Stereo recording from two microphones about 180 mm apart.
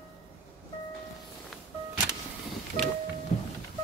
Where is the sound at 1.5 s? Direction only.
Centre (ahead or behind).